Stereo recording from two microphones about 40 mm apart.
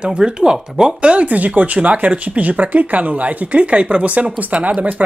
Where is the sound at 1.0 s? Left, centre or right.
Right.